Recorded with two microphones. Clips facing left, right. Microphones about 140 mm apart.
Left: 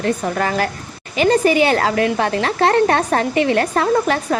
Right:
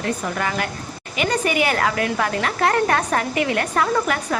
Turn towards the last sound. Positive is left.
turn(degrees=30)  # may be behind; listen again after turning